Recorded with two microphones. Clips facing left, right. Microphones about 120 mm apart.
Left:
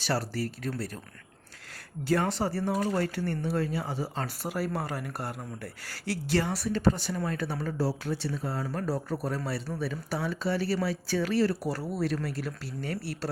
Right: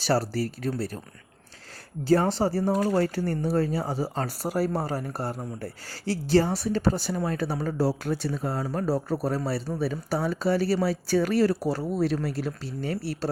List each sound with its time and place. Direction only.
0.0 s speech: 35° right (ahead or behind)
2.0 s speech: 30° right (ahead or behind)
11.7 s speech: 25° right (ahead or behind)